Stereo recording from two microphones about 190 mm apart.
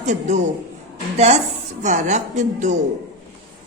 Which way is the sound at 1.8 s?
40° right (ahead or behind).